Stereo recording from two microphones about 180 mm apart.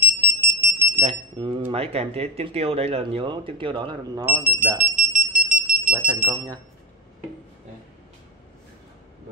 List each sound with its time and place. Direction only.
0.0 s smoke detector: 10° right (ahead or behind)
1.0 s speech: 30° right (ahead or behind)
4.3 s speech: 10° right (ahead or behind)